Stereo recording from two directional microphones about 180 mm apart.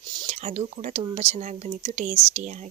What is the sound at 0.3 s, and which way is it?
A woman's voice, 35° right (ahead or behind).